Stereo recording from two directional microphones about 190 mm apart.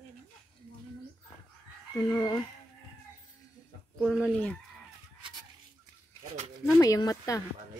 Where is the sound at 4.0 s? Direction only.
Centre (ahead or behind).